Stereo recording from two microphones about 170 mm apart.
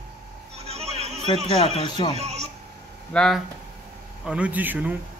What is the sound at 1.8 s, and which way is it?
Speech, 30° left (ahead or behind).